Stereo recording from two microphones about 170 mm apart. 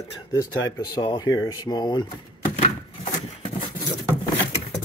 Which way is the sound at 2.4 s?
45° left (ahead or behind).